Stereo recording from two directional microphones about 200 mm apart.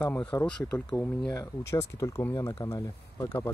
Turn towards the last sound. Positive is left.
turn(degrees=15)  # may be behind; listen again after turning